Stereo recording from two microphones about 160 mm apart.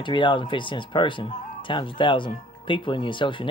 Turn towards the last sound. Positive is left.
turn(degrees=30)  # may be behind; listen again after turning